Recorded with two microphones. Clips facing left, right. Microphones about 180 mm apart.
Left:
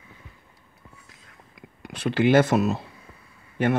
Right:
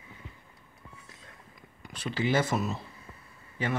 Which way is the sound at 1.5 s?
80° left.